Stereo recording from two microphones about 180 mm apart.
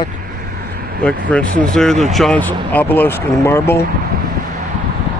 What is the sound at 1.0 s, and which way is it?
Speech, 5° left (ahead or behind).